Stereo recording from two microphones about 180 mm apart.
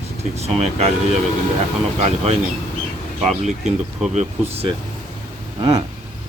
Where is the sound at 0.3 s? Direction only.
35° right (ahead or behind).